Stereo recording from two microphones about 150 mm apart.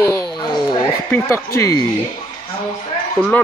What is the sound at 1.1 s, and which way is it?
Speech, 20° left (ahead or behind).